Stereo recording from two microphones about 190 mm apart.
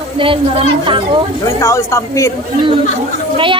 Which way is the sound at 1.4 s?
15° left (ahead or behind).